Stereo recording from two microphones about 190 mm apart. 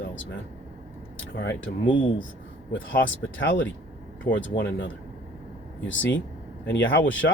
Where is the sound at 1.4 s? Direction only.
80° left.